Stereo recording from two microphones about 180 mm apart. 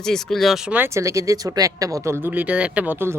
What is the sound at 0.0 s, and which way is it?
Speech, 5° left (ahead or behind).